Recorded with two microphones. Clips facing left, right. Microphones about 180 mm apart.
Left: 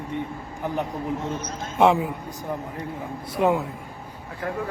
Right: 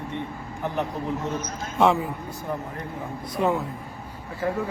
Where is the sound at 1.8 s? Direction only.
15° left (ahead or behind).